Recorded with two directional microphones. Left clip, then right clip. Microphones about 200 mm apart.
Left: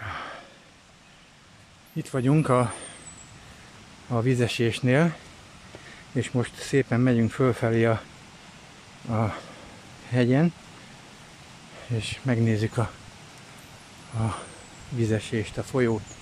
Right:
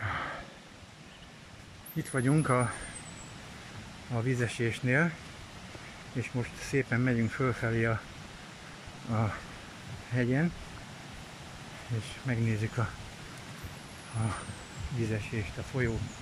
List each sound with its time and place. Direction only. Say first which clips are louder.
0.0 s a sound: even; 5° left (ahead or behind)
2.0 s speech: left 5 dB; 10° left (ahead or behind)
4.1 s speech: left 8 dB; 20° left (ahead or behind)
6.1 s speech: left 9 dB; 25° left (ahead or behind)
9.1 s speech: left 6 dB; 15° left (ahead or behind)
12.0 s speech: left 9 dB; 20° left (ahead or behind)
14.1 s speech: left 5 dB; 15° left (ahead or behind)